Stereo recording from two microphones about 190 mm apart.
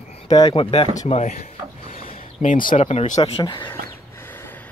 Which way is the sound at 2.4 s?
45° left (ahead or behind).